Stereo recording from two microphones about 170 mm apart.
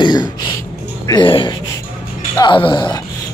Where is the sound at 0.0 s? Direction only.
25° left (ahead or behind).